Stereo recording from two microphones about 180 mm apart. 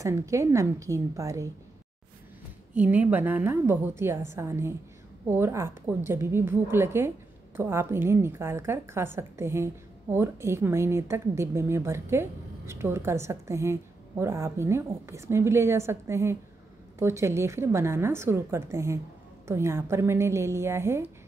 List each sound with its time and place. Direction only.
0.0 s a woman's voice: 15° right (ahead or behind)
2.7 s a woman's voice: 10° right (ahead or behind)